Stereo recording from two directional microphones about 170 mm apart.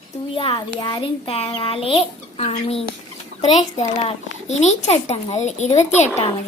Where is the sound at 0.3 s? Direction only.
30° left (ahead or behind).